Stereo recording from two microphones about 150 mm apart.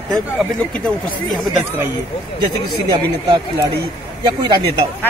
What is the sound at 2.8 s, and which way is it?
Speech, 30° right (ahead or behind).